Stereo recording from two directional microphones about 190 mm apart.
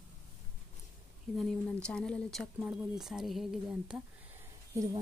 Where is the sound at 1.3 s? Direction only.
Centre (ahead or behind).